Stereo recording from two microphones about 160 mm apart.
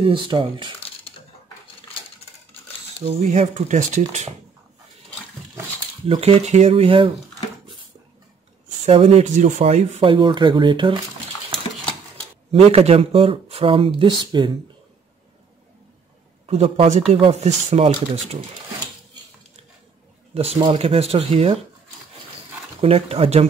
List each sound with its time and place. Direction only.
0.0 s speech: 30° right (ahead or behind)
3.0 s speech: 40° right (ahead or behind)
6.0 s speech: 35° right (ahead or behind)
8.8 s speech: 40° right (ahead or behind)
10.0 s speech: 30° right (ahead or behind)
12.4 s speech: 40° right (ahead or behind)
16.4 s speech: 35° right (ahead or behind)
20.5 s speech: 35° right (ahead or behind)
22.8 s speech: 40° right (ahead or behind)